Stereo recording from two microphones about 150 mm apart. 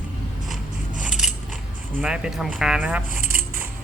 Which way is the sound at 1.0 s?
5° right (ahead or behind).